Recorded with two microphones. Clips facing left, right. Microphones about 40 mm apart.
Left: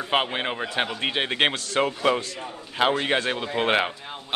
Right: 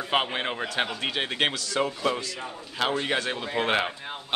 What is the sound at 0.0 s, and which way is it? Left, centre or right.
A man's voice, centre.